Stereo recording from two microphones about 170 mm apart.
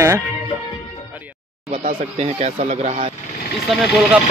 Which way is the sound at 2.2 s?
40° right (ahead or behind).